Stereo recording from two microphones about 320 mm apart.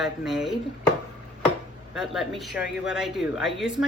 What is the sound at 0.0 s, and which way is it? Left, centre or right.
Speech, centre.